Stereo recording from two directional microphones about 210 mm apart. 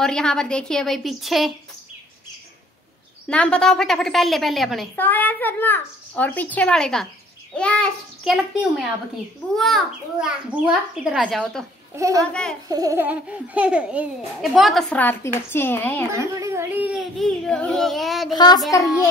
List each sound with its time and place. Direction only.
0.0 s a woman's voice: 5° left (ahead or behind)
3.3 s a woman's voice: 5° left (ahead or behind)
12.6 s a woman's voice: 15° right (ahead or behind); by 16.1 s 10° left (ahead or behind)
16.3 s a woman's voice: 15° right (ahead or behind)
18.3 s child singing: 20° left (ahead or behind)